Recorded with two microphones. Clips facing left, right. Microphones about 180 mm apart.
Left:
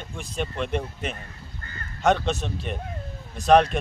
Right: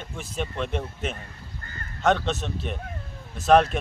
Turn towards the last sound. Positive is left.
turn(degrees=-5)  # may be behind; listen again after turning